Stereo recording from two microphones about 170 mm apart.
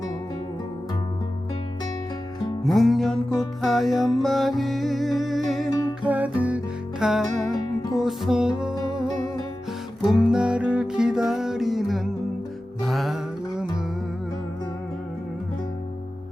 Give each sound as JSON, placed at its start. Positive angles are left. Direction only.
{"t": 2.6, "sound": "music", "side_deg": 0}
{"t": 7.5, "sound": "music", "side_deg": 25}
{"t": 7.9, "sound": "music", "side_deg": 0}
{"t": 10.2, "sound": "music", "side_deg": -5}